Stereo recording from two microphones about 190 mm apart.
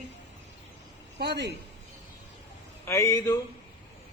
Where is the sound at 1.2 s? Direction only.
60° right (ahead or behind).